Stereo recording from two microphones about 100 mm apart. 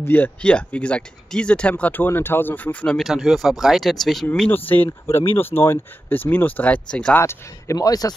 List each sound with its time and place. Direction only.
0.0 s speech: 20° left (ahead or behind)
3.0 s speech: 5° right (ahead or behind)
4.5 s speech: 20° left (ahead or behind)
7.2 s speech: 25° left (ahead or behind)
7.7 s speech: 40° left (ahead or behind)